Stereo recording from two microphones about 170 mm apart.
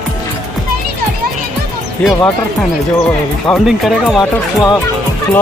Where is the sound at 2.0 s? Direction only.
10° left (ahead or behind).